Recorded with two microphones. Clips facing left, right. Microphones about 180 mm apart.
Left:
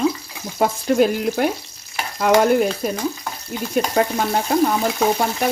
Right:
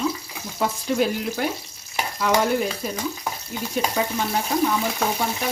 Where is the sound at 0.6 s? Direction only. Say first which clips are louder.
Left 6 dB; 55° left (ahead or behind).